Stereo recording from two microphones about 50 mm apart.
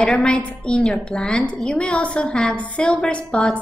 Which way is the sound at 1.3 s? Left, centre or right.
Centre.